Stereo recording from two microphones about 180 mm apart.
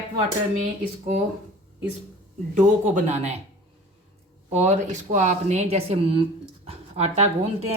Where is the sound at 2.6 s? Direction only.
45° right (ahead or behind).